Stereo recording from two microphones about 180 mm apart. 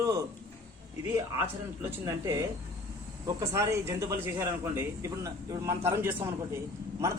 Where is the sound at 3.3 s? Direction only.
20° right (ahead or behind).